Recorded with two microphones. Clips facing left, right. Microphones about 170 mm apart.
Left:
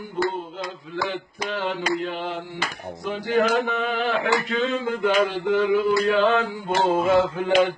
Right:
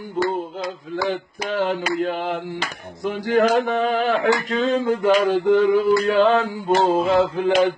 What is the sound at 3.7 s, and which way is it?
Music, 40° right (ahead or behind).